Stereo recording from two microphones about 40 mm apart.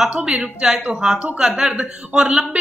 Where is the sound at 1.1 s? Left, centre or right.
Right.